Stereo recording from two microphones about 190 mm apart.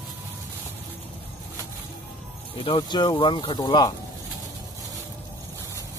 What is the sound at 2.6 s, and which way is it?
Speech, 25° left (ahead or behind).